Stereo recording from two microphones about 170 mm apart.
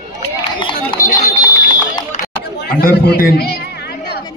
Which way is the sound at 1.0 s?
20° left (ahead or behind).